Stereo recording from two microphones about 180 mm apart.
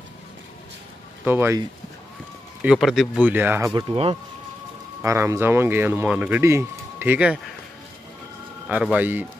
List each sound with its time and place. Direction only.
1.2 s speech: 10° right (ahead or behind)
2.6 s speech: centre (ahead or behind)
3.7 s speech: 30° right (ahead or behind)
5.0 s speech: 15° right (ahead or behind)
8.6 s speech: 10° right (ahead or behind)